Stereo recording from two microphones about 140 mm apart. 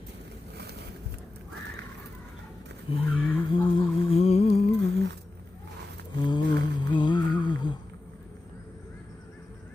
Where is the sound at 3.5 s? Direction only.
40° left (ahead or behind).